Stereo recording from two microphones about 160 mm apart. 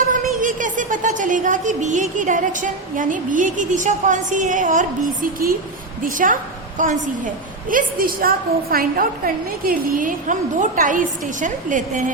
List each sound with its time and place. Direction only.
0.1 s a woman's voice: 55° right (ahead or behind)